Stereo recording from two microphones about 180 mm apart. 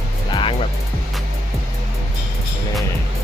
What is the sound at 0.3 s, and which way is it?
Music, 30° left (ahead or behind).